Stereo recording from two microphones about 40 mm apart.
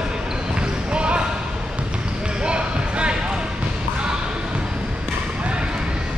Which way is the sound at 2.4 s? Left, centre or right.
Right.